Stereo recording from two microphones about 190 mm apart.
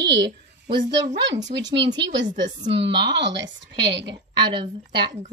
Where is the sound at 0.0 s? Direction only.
70° right (ahead or behind).